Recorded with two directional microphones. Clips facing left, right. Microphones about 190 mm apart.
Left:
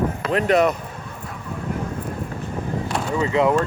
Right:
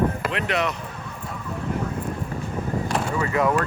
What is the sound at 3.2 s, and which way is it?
Speech, 20° left (ahead or behind).